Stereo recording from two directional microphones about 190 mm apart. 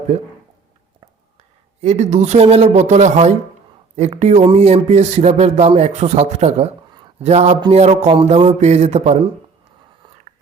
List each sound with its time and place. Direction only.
0.1 s speech: 40° right (ahead or behind)
1.8 s speech: 35° right (ahead or behind)